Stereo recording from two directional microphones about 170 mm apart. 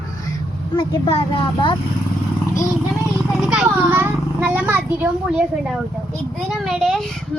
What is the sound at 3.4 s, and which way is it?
A child's voice, 5° right (ahead or behind).